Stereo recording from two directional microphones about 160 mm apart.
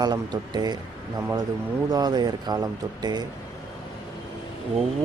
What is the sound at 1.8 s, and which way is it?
Speech, 25° right (ahead or behind).